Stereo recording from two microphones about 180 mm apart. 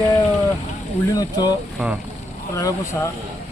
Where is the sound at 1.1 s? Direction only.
20° left (ahead or behind).